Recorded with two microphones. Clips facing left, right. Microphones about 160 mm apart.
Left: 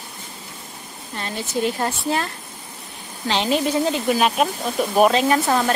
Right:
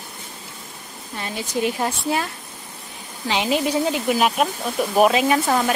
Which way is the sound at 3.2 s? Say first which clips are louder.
Left 1 dB; 10° right (ahead or behind).